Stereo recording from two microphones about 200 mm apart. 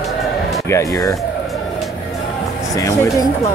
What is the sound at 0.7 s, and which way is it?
Speech, 15° left (ahead or behind).